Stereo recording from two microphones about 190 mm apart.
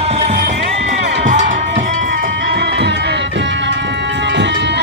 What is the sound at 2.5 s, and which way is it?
Music, 65° right (ahead or behind).